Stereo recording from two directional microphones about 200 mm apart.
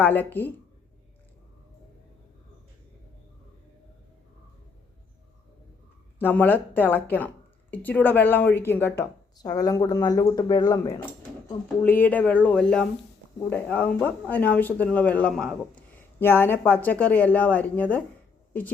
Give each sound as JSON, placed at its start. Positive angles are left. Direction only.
{"t": 0.0, "sound": "speech", "side_deg": 10}
{"t": 6.1, "sound": "speech", "side_deg": 10}